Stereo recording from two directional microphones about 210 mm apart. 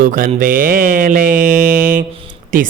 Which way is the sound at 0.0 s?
40° right (ahead or behind).